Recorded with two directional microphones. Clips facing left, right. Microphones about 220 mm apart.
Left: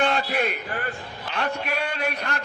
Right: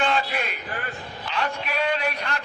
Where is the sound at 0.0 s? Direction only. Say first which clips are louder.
Left 1 dB; 40° left (ahead or behind).